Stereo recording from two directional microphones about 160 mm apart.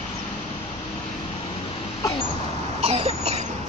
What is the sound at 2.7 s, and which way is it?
Cough, 40° right (ahead or behind).